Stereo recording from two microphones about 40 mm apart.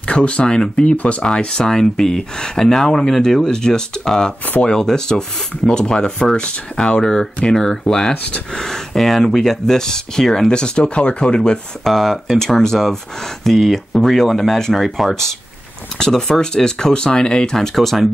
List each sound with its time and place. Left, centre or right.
0.0 s speech: left
1.2 s speech: left
10.5 s speech: left
11.8 s speech: centre
16.0 s speech: centre
17.7 s speech: centre